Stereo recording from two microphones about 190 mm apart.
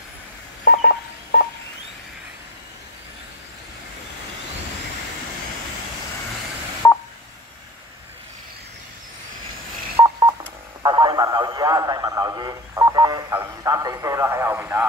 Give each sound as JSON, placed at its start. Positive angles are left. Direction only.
{"t": 0.7, "sound": "telephone dialing", "side_deg": 50}
{"t": 6.8, "sound": "telephone dialing", "side_deg": 15}
{"t": 10.0, "sound": "telephone dialing", "side_deg": -20}
{"t": 10.8, "sound": "speech", "side_deg": -20}